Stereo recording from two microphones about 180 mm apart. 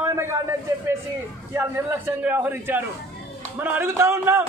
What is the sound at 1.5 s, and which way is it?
A man's voice, 10° right (ahead or behind).